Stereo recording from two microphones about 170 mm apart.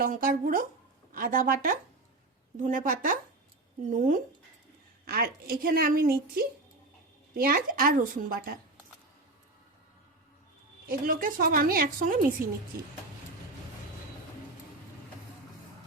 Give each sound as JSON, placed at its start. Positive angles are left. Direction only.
{"t": 0.0, "sound": "a woman's voice", "side_deg": -55}
{"t": 5.0, "sound": "a woman's voice", "side_deg": -65}
{"t": 7.4, "sound": "a woman's voice", "side_deg": -55}
{"t": 10.8, "sound": "a woman's voice", "side_deg": -55}